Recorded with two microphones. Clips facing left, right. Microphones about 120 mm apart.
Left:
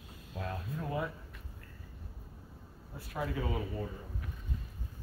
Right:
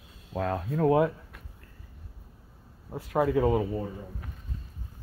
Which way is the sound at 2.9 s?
90° right.